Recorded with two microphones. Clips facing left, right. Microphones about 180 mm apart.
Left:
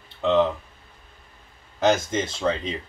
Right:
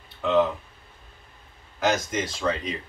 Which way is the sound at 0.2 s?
25° left (ahead or behind).